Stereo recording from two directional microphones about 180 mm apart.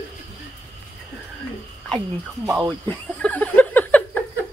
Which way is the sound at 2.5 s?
20° right (ahead or behind).